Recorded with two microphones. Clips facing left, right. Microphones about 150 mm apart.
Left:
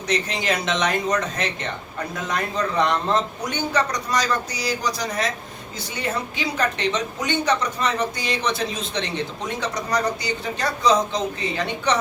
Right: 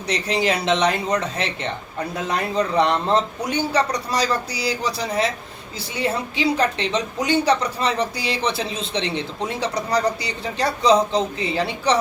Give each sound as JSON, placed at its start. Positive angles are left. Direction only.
{"t": 0.1, "sound": "a woman's voice", "side_deg": -35}